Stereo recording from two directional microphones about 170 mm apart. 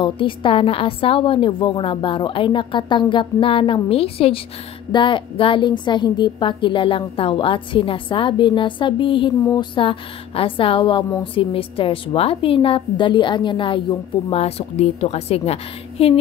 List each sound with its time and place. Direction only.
0.0 s a woman's voice: 30° left (ahead or behind)